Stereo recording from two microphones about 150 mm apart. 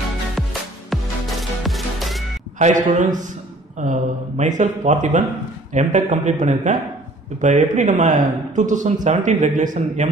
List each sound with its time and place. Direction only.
1.6 s music: centre (ahead or behind)
2.6 s speech: 55° right (ahead or behind)